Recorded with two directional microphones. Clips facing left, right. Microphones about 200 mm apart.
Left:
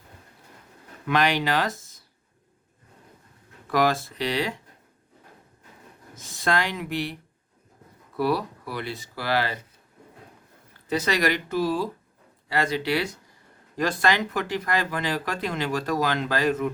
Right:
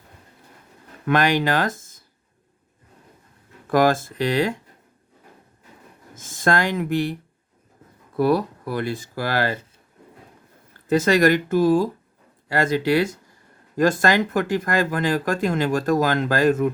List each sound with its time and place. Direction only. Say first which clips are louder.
1.0 s speech: right 4 dB; 50° right (ahead or behind)
3.7 s speech: right 5 dB; 50° right (ahead or behind)
6.1 s speech: right 4 dB; 50° right (ahead or behind)
10.8 s speech: right 7 dB; 50° right (ahead or behind)